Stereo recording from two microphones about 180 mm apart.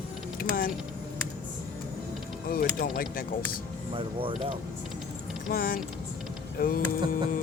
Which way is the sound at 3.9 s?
30° right (ahead or behind).